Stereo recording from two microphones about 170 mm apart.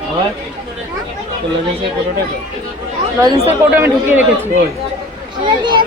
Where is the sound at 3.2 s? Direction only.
20° right (ahead or behind).